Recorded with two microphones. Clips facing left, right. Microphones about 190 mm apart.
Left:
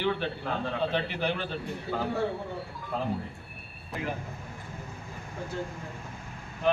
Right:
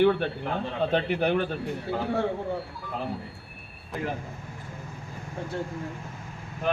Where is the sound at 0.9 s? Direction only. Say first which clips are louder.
Right 5 dB; 55° right (ahead or behind).